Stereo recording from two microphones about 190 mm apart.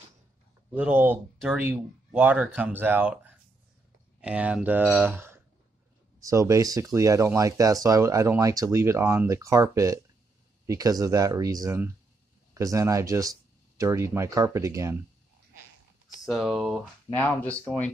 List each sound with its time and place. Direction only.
0.7 s speech: 10° right (ahead or behind)
4.2 s speech: 5° right (ahead or behind)
16.3 s speech: centre (ahead or behind)